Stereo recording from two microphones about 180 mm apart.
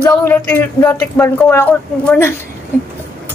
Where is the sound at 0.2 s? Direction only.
10° left (ahead or behind).